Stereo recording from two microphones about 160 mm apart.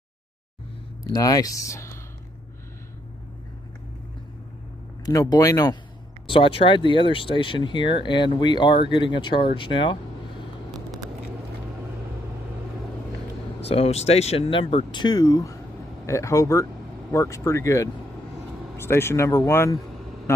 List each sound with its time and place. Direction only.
1.0 s speech: 20° left (ahead or behind)
5.0 s speech: 25° left (ahead or behind)
6.2 s speech: 35° left (ahead or behind)
13.6 s speech: 40° left (ahead or behind); by 19.8 s 15° left (ahead or behind)